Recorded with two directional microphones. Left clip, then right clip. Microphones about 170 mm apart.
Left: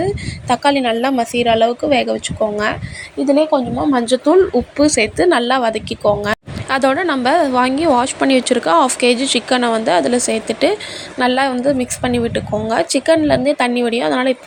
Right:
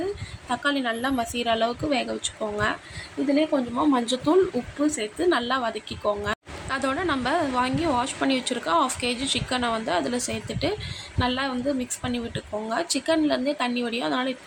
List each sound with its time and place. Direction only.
0.4 s a woman's voice: 35° left (ahead or behind)
3.9 s speech: 25° left (ahead or behind)
4.8 s a woman's voice: 35° left (ahead or behind)